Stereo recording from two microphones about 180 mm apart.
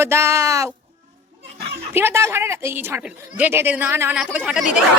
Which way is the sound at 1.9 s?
15° right (ahead or behind).